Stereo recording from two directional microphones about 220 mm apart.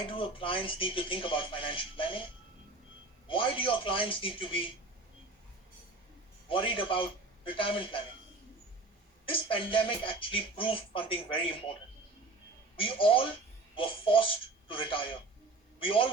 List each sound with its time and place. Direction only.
0.0 s speech: 25° left (ahead or behind)
3.2 s speech: 25° left (ahead or behind)
6.5 s speech: 25° left (ahead or behind)
9.2 s speech: 25° left (ahead or behind)
12.7 s speech: 25° left (ahead or behind)